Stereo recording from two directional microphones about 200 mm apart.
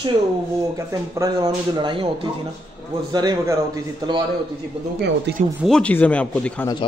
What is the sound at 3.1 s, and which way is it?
Speech, 20° right (ahead or behind).